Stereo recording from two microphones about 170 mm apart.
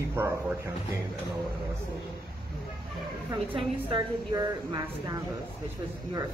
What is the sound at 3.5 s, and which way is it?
A woman's voice, 25° right (ahead or behind).